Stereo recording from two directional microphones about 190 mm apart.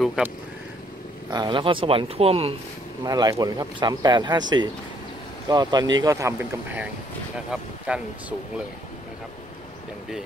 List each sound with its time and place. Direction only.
0.0 s a sound: centre (ahead or behind)
1.3 s speech: 25° right (ahead or behind)
3.0 s speech: 20° right (ahead or behind)